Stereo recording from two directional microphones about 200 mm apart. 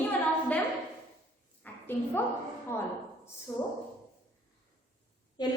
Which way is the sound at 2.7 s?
10° left (ahead or behind).